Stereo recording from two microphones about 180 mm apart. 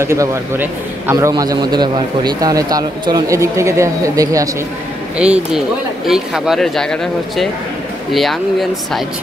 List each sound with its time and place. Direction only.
0.0 s a man's voice: 15° right (ahead or behind)
5.1 s speech: 5° right (ahead or behind)